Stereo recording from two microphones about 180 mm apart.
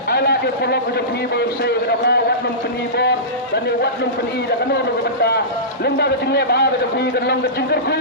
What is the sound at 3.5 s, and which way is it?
A man's voice, 65° left (ahead or behind).